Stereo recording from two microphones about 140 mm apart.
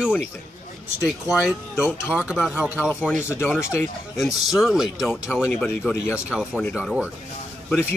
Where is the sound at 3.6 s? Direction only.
20° left (ahead or behind).